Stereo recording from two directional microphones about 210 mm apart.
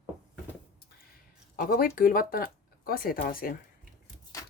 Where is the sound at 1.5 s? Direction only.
40° left (ahead or behind).